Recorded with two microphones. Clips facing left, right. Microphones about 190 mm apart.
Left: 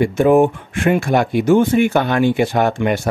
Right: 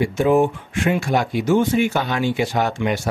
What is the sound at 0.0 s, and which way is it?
Speech, 55° left (ahead or behind).